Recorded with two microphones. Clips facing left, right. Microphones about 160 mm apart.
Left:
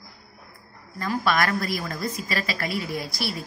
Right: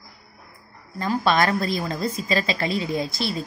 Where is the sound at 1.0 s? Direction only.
25° right (ahead or behind).